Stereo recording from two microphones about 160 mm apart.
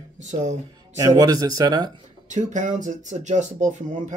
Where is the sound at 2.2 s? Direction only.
50° right (ahead or behind).